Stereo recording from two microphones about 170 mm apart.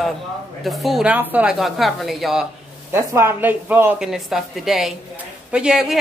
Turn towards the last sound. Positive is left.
turn(degrees=-5)  # may be behind; listen again after turning